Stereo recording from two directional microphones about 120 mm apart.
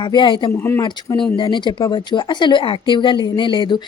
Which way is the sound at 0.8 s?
35° left (ahead or behind).